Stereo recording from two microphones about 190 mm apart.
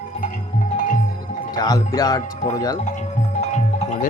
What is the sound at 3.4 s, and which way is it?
Music, 35° left (ahead or behind).